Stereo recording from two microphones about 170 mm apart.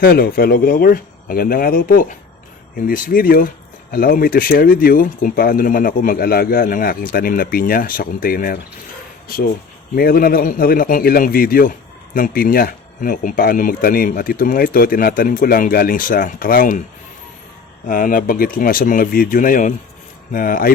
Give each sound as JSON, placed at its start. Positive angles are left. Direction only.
{"t": 0.0, "sound": "speech", "side_deg": 60}
{"t": 17.8, "sound": "speech", "side_deg": 55}